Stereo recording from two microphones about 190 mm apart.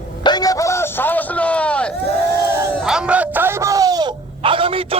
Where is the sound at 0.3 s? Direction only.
20° left (ahead or behind).